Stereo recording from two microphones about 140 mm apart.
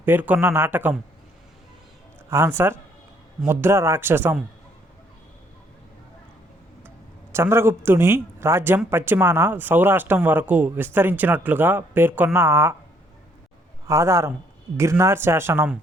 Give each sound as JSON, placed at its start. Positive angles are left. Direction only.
{"t": 0.0, "sound": "speech", "side_deg": -15}
{"t": 2.3, "sound": "speech", "side_deg": -20}
{"t": 7.3, "sound": "a man's voice", "side_deg": -20}
{"t": 13.8, "sound": "a man's voice", "side_deg": -20}